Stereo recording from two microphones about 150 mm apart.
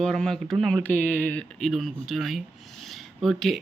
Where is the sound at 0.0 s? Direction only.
5° left (ahead or behind).